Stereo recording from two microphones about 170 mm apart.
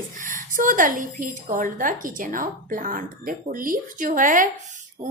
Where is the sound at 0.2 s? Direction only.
55° right (ahead or behind).